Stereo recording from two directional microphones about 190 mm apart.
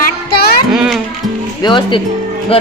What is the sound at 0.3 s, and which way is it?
Music, 55° left (ahead or behind).